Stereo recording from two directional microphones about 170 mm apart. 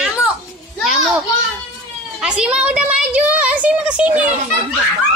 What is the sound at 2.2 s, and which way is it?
A woman's voice, 5° right (ahead or behind).